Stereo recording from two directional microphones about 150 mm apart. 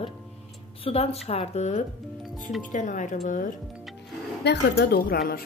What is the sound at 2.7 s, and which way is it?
Speech, 55° left (ahead or behind).